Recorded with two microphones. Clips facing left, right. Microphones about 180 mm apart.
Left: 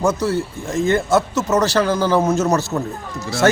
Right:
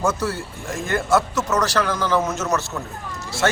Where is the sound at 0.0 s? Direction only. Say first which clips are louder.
Left 5 dB; 15° left (ahead or behind).